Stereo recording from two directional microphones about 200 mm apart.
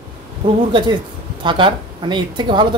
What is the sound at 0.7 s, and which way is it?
Speech, 25° right (ahead or behind).